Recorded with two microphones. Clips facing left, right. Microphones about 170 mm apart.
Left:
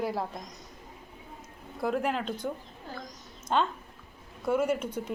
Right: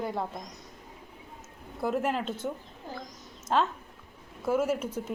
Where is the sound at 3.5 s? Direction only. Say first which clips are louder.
Right 1 dB; centre (ahead or behind).